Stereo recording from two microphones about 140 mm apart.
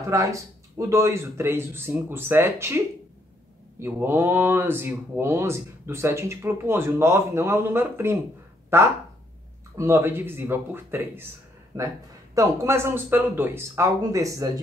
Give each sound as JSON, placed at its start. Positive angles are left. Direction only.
{"t": 0.1, "sound": "a man's voice", "side_deg": -20}
{"t": 3.8, "sound": "a man's voice", "side_deg": -15}
{"t": 12.4, "sound": "a man's voice", "side_deg": -20}